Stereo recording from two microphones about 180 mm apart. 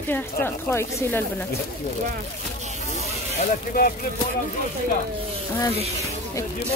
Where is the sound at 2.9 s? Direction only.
40° left (ahead or behind).